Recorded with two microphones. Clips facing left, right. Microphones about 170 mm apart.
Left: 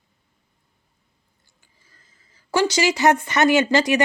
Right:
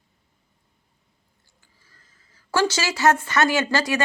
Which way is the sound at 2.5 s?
15° left (ahead or behind).